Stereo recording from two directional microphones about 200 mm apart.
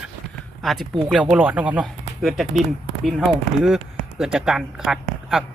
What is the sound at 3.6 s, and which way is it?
Speech, centre (ahead or behind).